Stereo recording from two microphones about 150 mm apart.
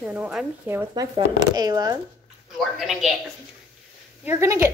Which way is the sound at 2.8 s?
Centre (ahead or behind).